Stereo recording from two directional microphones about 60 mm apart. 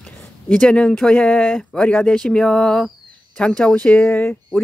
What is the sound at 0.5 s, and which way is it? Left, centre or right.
Speech, centre.